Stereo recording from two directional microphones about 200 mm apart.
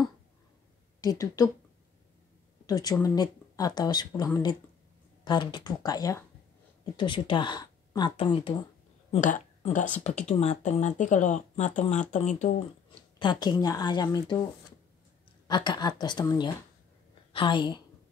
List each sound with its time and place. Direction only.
1.0 s speech: 15° left (ahead or behind)
2.6 s a woman's voice: 20° left (ahead or behind)
9.1 s speech: 35° left (ahead or behind)
13.2 s speech: 20° left (ahead or behind)
15.4 s a woman's voice: 20° left (ahead or behind)